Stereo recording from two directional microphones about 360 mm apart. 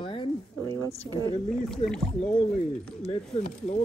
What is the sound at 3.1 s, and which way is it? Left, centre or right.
Speech, centre.